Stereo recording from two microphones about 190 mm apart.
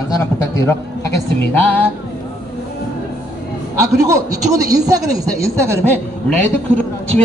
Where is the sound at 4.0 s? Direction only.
15° right (ahead or behind).